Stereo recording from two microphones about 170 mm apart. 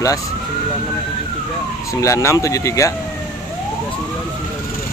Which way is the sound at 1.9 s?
20° left (ahead or behind).